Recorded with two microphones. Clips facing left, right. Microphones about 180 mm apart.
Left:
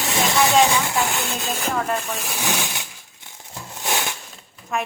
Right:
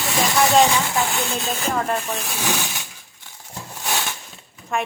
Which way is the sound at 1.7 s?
10° right (ahead or behind).